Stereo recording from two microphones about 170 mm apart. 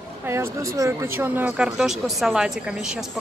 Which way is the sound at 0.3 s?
15° right (ahead or behind).